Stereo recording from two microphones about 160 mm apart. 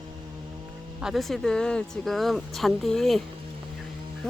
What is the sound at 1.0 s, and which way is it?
Speech, centre (ahead or behind).